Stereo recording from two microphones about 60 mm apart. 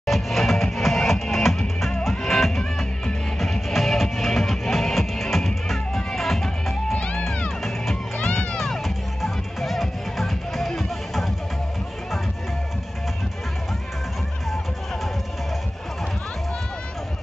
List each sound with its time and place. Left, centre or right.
0.0 s music: centre
7.0 s music: left
7.4 s music: centre
7.9 s music: left
8.5 s music: centre